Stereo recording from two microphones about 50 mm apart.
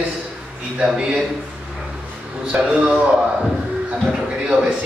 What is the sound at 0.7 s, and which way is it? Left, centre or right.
Speech, centre.